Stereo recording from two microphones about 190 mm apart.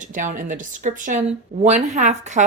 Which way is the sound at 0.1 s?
45° right (ahead or behind).